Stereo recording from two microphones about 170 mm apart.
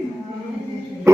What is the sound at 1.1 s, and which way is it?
Music, 15° right (ahead or behind).